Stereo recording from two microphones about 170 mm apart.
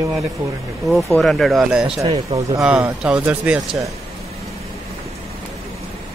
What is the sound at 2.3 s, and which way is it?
Speech, 30° right (ahead or behind).